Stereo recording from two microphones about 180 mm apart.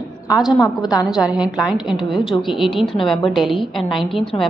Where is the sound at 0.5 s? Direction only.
20° left (ahead or behind).